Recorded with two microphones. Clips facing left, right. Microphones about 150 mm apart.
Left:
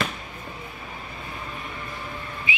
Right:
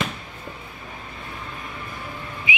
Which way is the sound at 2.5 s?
15° right (ahead or behind).